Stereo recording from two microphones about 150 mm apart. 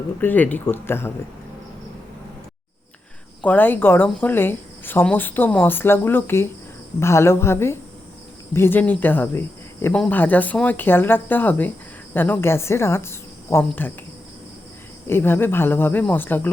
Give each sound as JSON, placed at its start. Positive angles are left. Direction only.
{"t": 0.2, "sound": "speech", "side_deg": 10}
{"t": 3.4, "sound": "speech", "side_deg": 10}
{"t": 15.0, "sound": "speech", "side_deg": 15}